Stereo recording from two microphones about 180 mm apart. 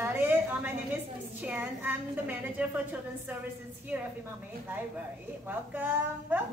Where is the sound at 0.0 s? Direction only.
10° right (ahead or behind).